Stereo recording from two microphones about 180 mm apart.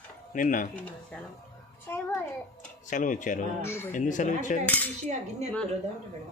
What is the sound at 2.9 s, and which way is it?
Speech, 45° left (ahead or behind).